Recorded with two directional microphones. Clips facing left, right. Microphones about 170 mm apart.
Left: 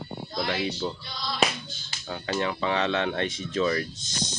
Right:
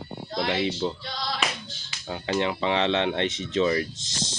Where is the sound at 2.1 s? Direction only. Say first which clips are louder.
Right 2 dB; 20° right (ahead or behind).